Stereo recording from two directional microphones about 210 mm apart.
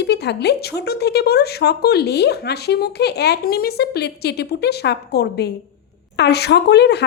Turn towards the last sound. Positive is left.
turn(degrees=55)  # may be behind; listen again after turning